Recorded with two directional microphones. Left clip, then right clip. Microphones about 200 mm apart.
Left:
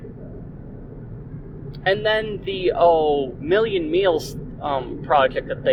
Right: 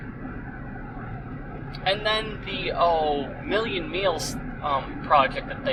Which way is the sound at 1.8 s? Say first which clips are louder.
Left 5 dB; 45° left (ahead or behind).